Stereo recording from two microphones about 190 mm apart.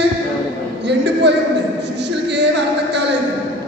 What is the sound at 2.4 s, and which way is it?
Music, 65° right (ahead or behind).